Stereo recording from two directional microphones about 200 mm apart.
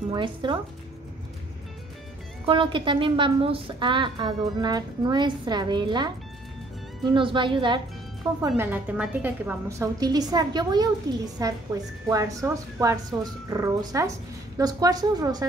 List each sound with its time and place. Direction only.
0.1 s a woman's voice: 25° right (ahead or behind)
2.4 s a woman's voice: 25° right (ahead or behind)